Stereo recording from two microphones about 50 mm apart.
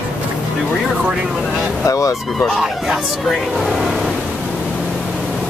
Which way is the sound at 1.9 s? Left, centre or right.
Left.